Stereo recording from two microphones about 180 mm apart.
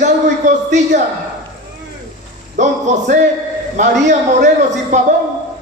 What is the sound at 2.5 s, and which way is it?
A man's voice, 40° right (ahead or behind).